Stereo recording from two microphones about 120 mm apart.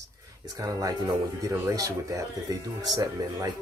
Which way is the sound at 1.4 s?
25° right (ahead or behind).